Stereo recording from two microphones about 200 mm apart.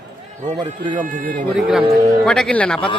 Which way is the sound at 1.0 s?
40° right (ahead or behind).